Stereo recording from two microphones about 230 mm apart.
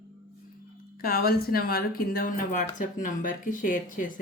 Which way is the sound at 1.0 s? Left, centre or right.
Left.